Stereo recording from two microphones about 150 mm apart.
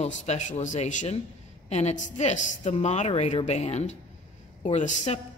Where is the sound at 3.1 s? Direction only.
40° left (ahead or behind).